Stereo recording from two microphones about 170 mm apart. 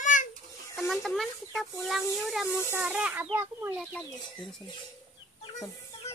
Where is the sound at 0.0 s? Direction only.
50° left (ahead or behind).